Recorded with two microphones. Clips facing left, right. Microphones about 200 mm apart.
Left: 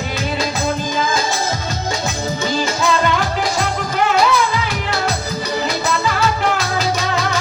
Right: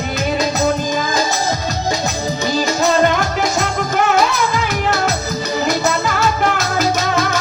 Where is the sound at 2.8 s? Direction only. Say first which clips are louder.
Right 4 dB; 45° right (ahead or behind).